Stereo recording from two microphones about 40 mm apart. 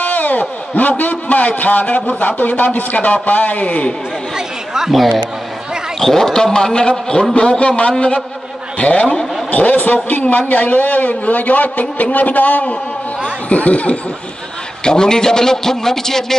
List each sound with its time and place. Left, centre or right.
0.0 s a man's voice: left
4.7 s a man's voice: centre; by 9.0 s left
9.0 s a man's voice: centre
9.5 s a sound: left
10.2 s a man's voice: left
13.5 s a man's voice: left
14.9 s a man's voice: centre